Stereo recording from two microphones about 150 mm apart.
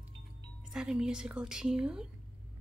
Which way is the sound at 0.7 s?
5° right (ahead or behind).